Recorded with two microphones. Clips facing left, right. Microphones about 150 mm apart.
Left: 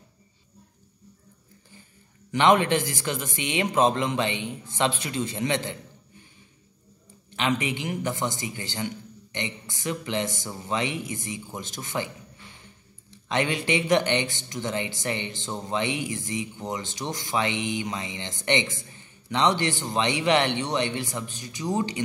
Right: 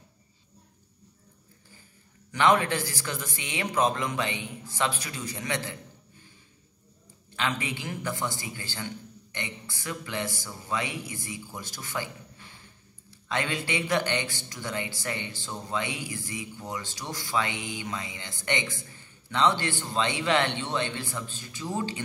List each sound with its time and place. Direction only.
2.3 s a man's voice: 20° left (ahead or behind)
7.2 s a man's voice: 20° left (ahead or behind)
13.1 s a man's voice: 20° left (ahead or behind)